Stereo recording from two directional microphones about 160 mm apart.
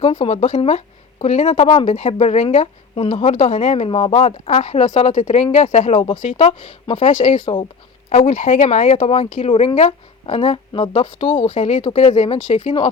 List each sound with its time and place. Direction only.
0.0 s a woman's voice: 35° left (ahead or behind)